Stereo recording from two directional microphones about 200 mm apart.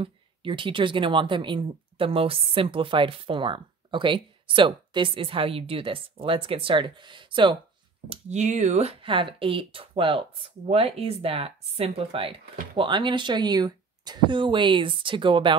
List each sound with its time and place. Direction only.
0.0 s speech: 25° right (ahead or behind)
8.1 s speech: 35° right (ahead or behind)